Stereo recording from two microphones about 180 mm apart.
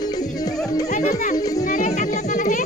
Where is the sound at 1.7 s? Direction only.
40° left (ahead or behind).